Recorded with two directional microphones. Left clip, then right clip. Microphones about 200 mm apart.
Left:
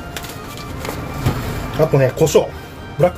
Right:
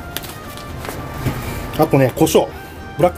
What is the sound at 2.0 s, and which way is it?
Speech, 35° right (ahead or behind).